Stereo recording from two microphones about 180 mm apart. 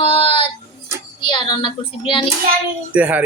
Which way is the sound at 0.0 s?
30° left (ahead or behind).